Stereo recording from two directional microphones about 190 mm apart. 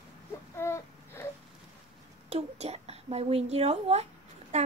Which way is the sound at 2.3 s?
35° right (ahead or behind).